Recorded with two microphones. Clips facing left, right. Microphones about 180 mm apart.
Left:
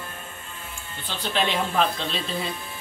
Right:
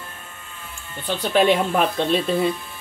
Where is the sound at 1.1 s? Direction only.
55° right (ahead or behind).